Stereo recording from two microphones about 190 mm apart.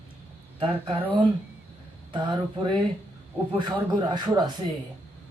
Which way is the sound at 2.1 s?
25° right (ahead or behind).